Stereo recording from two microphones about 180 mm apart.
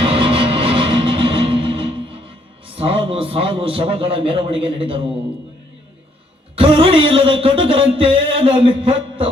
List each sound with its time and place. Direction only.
0.0 s music: 30° right (ahead or behind)
6.6 s music: 30° right (ahead or behind)